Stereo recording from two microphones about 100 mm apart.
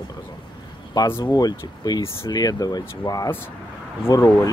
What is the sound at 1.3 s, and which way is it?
Speech, 40° left (ahead or behind).